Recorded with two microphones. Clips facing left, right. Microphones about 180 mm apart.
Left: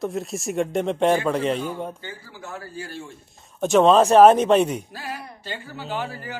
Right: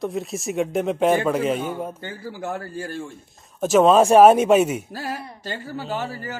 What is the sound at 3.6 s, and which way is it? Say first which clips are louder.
Speech: right 1 dB; centre (ahead or behind).